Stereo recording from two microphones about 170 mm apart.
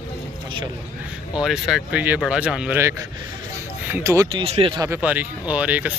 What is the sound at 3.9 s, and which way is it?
Speech, 15° right (ahead or behind).